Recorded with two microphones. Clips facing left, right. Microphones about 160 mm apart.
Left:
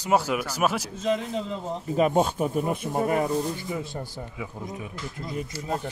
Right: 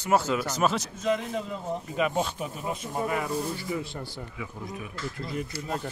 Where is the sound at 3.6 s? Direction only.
20° left (ahead or behind).